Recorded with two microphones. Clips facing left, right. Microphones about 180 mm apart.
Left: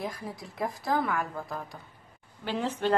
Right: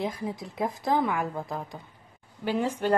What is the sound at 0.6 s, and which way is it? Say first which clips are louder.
A woman's voice: right 3 dB; 15° right (ahead or behind).